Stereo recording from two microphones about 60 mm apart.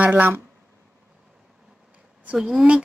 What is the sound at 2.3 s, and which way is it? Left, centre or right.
Speech, centre.